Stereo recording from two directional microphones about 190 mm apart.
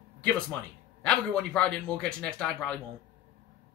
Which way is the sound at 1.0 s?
5° left (ahead or behind).